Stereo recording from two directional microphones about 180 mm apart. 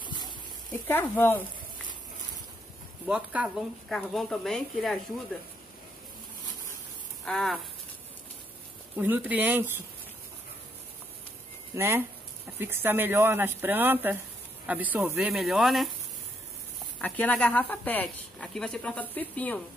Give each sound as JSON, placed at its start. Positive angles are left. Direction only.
{"t": 0.0, "sound": "a sound", "side_deg": 25}
{"t": 0.8, "sound": "speech", "side_deg": 10}
{"t": 3.1, "sound": "speech", "side_deg": -5}
{"t": 7.2, "sound": "speech", "side_deg": 0}
{"t": 8.9, "sound": "speech", "side_deg": -10}
{"t": 11.7, "sound": "speech", "side_deg": -15}
{"t": 17.0, "sound": "speech", "side_deg": 10}